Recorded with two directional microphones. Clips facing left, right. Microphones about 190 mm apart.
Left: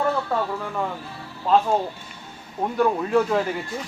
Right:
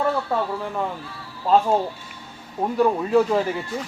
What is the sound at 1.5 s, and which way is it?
Speech, 10° right (ahead or behind).